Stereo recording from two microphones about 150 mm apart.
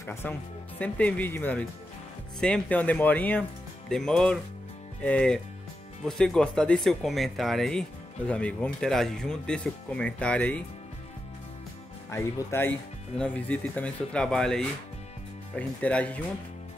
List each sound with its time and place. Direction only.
0.0 s speech: 15° left (ahead or behind)
12.1 s speech: 15° left (ahead or behind)